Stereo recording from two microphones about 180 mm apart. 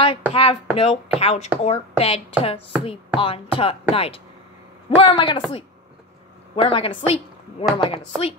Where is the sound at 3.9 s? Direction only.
30° left (ahead or behind).